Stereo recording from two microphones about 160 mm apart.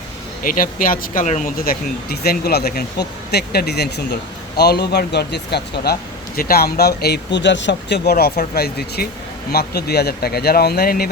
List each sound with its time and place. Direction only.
0.4 s a man's voice: 60° left (ahead or behind)